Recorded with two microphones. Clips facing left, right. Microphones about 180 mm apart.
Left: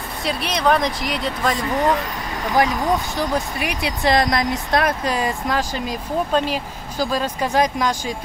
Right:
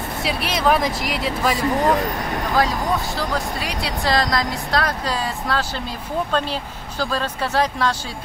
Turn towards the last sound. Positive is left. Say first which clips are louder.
# left 2 dB
turn(degrees=15)  # may be behind; listen again after turning